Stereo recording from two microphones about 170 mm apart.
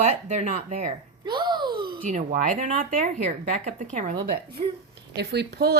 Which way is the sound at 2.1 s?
50° right (ahead or behind).